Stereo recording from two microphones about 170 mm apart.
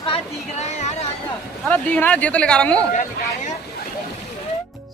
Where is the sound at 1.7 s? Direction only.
10° left (ahead or behind).